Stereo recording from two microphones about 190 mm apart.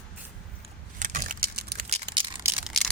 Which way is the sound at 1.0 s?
45° right (ahead or behind).